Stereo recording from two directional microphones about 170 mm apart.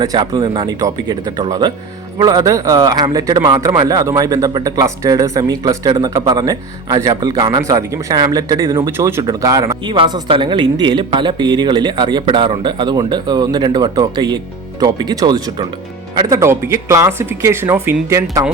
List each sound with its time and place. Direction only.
0.0 s a man's voice: 25° right (ahead or behind)